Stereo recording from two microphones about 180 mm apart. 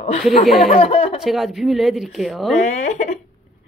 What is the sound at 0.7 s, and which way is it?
Speech, 30° left (ahead or behind).